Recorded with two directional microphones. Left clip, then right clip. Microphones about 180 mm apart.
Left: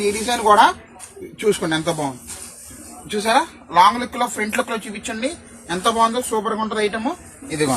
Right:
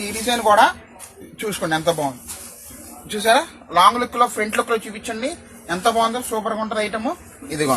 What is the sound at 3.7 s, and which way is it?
A man's voice, 15° right (ahead or behind).